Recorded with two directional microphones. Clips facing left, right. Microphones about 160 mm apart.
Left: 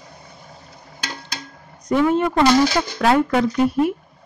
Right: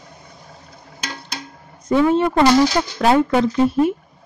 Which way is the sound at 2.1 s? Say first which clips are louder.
Right 1 dB; 25° right (ahead or behind).